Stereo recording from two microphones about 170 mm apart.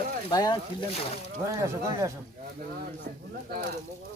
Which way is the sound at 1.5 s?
20° right (ahead or behind).